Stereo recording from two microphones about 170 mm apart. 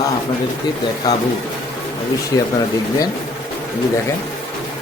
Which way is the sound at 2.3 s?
20° left (ahead or behind).